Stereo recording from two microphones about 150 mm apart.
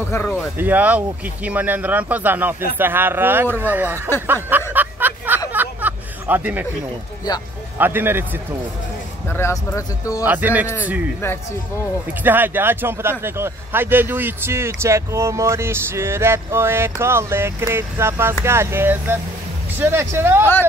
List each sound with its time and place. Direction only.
0.1 s speech: 15° left (ahead or behind)
0.6 s speech: 10° right (ahead or behind)
4.7 s a sound: 10° right (ahead or behind)
7.8 s speech: 15° right (ahead or behind)
9.3 s speech: 15° left (ahead or behind)
10.2 s speech: 10° right (ahead or behind)
12.1 s speech: 15° right (ahead or behind)